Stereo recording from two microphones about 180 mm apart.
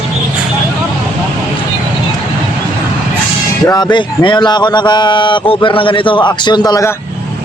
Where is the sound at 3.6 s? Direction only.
25° left (ahead or behind).